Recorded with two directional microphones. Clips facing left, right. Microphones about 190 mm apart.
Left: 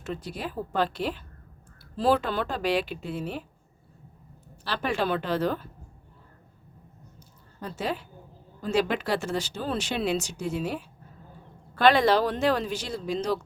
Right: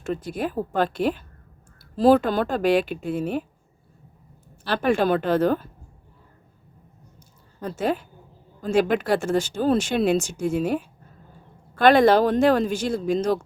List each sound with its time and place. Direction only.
0.0 s speech: 50° right (ahead or behind)
4.6 s speech: 50° right (ahead or behind)
7.8 s speech: 50° right (ahead or behind)